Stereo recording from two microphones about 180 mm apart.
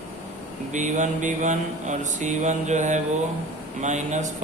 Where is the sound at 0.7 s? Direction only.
45° right (ahead or behind).